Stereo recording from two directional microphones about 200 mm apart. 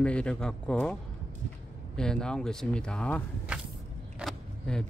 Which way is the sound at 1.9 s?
5° left (ahead or behind).